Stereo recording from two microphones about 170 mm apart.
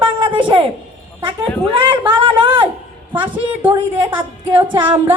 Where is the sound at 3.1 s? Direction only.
10° right (ahead or behind).